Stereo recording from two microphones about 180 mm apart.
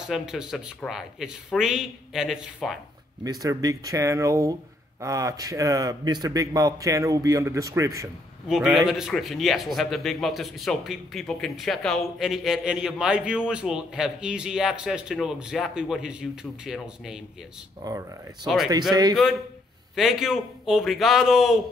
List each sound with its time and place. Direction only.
0.0 s a man's voice: centre (ahead or behind)
3.3 s a man's voice: 20° right (ahead or behind)
8.5 s a man's voice: 5° right (ahead or behind)
17.8 s speech: 20° right (ahead or behind)
20.0 s a man's voice: centre (ahead or behind)